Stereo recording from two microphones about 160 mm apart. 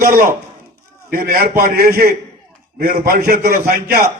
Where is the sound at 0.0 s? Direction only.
65° right (ahead or behind).